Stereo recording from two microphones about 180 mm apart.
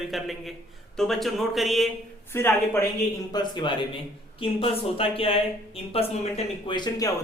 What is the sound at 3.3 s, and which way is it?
A man's voice, 25° left (ahead or behind).